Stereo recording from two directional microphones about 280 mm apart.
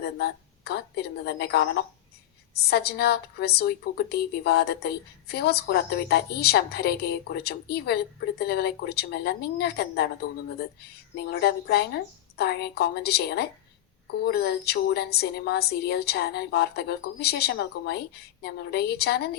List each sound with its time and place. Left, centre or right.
0.0 s a woman's voice: left